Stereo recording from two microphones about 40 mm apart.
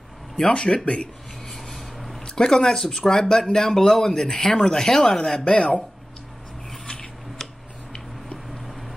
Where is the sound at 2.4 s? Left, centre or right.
Centre.